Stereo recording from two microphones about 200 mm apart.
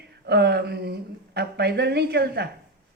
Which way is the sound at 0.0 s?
55° right (ahead or behind).